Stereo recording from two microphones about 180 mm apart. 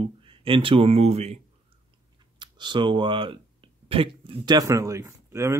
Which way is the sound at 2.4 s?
25° right (ahead or behind).